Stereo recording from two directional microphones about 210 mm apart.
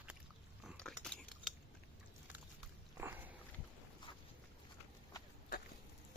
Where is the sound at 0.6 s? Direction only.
5° left (ahead or behind).